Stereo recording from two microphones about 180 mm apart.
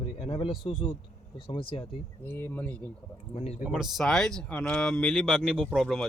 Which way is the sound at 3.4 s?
35° left (ahead or behind).